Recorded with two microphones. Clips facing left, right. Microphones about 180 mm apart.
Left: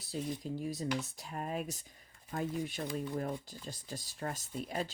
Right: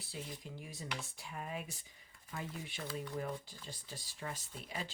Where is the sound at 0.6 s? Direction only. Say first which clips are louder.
Left 10 dB; 40° left (ahead or behind).